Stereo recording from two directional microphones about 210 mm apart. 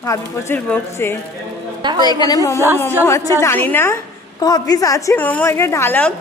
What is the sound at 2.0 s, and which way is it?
A woman's voice, 20° left (ahead or behind).